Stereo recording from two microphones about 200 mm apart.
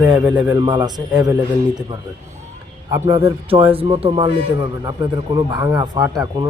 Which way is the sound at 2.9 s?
15° right (ahead or behind).